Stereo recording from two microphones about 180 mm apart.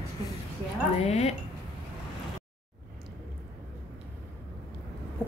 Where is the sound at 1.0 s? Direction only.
35° left (ahead or behind).